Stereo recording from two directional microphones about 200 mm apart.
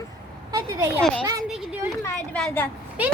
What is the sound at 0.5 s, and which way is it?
Speech, 15° right (ahead or behind).